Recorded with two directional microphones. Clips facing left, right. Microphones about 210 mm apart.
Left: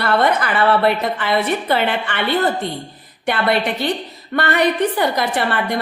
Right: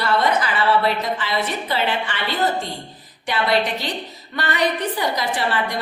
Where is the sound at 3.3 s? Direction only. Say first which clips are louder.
Left 2 dB; 55° left (ahead or behind).